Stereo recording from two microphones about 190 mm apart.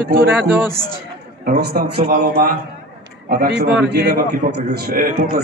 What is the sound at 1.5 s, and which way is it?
A man's voice, 55° right (ahead or behind).